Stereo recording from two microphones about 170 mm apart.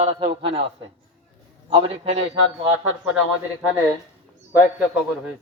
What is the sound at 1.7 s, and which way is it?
Speech, 30° right (ahead or behind).